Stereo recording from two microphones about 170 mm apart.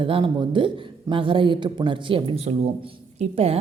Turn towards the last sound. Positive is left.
turn(degrees=-35)  # may be behind; listen again after turning